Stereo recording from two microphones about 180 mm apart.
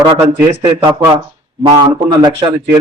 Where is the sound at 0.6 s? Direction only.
30° right (ahead or behind).